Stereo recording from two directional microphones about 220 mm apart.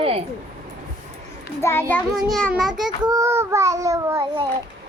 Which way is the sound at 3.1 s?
15° right (ahead or behind).